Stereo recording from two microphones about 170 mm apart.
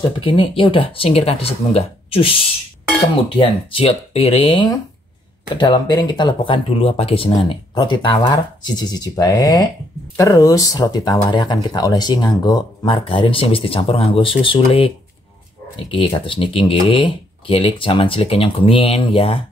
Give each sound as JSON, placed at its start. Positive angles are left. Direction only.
{"t": 0.2, "sound": "speech", "side_deg": 30}
{"t": 3.3, "sound": "speech", "side_deg": 30}
{"t": 15.9, "sound": "speech", "side_deg": 30}